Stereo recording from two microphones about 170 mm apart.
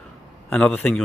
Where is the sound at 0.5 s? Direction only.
5° left (ahead or behind).